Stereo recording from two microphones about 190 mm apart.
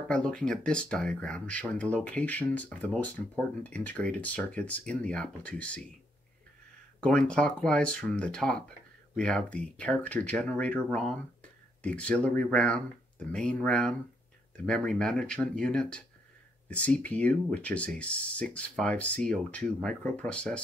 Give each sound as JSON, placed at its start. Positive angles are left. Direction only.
{"t": 0.1, "sound": "speech", "side_deg": 5}
{"t": 7.0, "sound": "speech", "side_deg": 5}